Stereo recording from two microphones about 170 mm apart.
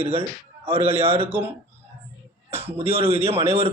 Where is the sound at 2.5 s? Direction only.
35° right (ahead or behind).